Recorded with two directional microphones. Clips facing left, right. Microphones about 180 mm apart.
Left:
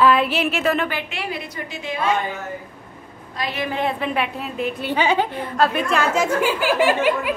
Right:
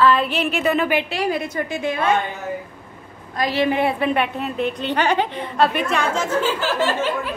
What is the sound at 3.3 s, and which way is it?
Speech, 40° right (ahead or behind).